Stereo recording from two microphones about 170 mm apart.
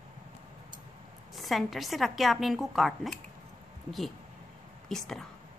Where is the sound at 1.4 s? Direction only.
Centre (ahead or behind).